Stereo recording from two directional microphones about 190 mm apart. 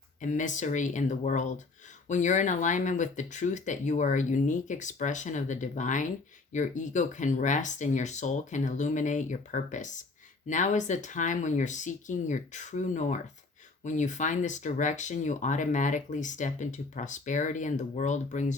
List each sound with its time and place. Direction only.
0.2 s speech: 40° left (ahead or behind)